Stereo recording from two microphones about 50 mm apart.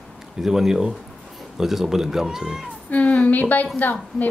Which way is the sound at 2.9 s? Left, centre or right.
Left.